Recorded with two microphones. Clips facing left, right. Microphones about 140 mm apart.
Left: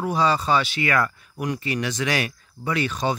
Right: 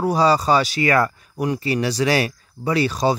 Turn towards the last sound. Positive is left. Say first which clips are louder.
# right 5 dB
turn(degrees=-35)  # may be behind; listen again after turning